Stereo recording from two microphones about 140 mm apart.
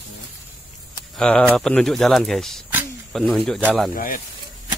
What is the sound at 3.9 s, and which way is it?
Speech, 80° left.